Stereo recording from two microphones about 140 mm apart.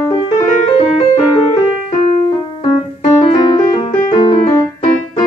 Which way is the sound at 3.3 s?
35° left (ahead or behind).